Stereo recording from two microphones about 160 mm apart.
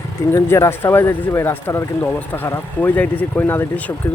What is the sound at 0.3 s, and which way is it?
Speech, 15° left (ahead or behind).